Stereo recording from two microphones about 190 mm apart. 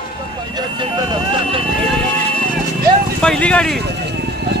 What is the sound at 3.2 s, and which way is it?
Speech, 5° left (ahead or behind).